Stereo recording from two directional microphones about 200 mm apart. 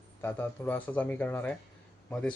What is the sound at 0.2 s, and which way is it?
Speech, 10° left (ahead or behind).